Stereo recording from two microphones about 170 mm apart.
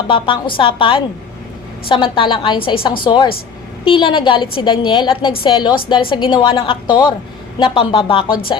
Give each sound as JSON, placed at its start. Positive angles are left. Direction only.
{"t": 0.1, "sound": "a woman's voice", "side_deg": 30}